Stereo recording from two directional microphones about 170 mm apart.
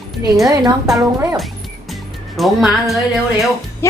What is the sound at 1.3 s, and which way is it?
Speech, centre (ahead or behind).